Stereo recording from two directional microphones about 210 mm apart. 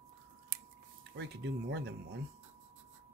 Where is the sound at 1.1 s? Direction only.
55° right (ahead or behind).